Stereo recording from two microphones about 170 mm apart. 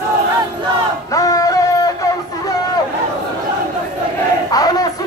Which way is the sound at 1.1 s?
20° left (ahead or behind).